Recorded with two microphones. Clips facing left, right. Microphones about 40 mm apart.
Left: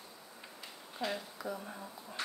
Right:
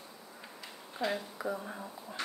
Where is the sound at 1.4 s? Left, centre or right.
Centre.